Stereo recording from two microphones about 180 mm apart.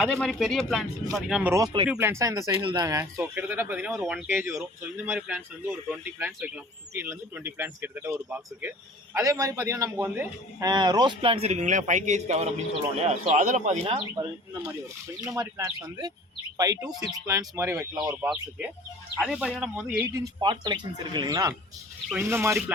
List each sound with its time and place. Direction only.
0.0 s speech: centre (ahead or behind)
1.5 s a man's voice: 25° right (ahead or behind)
1.9 s a man's voice: 10° right (ahead or behind); by 13.7 s 45° right (ahead or behind)
13.7 s speech: 30° right (ahead or behind)
15.2 s a man's voice: 20° right (ahead or behind)
18.1 s speech: 5° right (ahead or behind)
20.1 s a man's voice: 20° right (ahead or behind)